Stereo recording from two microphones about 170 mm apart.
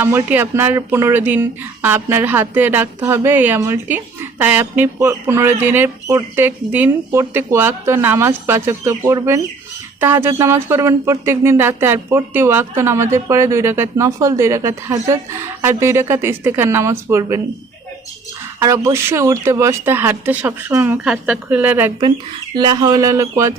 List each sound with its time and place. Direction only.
0.0 s speech: 15° right (ahead or behind)
18.6 s speech: 15° right (ahead or behind)
22.5 s speech: 25° right (ahead or behind)